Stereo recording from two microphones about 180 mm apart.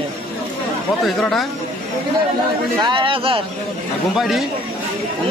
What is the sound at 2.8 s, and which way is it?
Speech, 25° right (ahead or behind).